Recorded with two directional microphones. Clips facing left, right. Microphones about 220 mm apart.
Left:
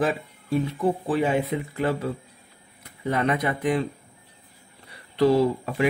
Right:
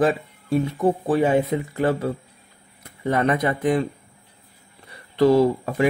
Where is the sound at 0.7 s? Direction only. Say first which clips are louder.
Right 5 dB; 45° right (ahead or behind).